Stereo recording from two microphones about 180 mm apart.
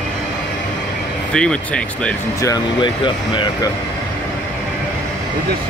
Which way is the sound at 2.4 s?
25° left (ahead or behind).